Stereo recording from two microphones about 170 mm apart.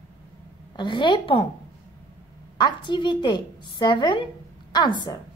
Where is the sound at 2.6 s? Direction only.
25° left (ahead or behind).